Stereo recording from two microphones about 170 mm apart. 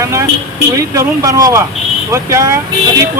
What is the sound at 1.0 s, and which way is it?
Speech, 20° right (ahead or behind).